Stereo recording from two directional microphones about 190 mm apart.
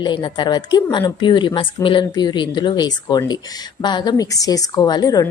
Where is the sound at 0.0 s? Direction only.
25° left (ahead or behind).